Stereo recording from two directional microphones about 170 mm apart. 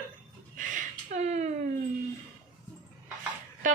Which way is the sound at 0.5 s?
50° right (ahead or behind).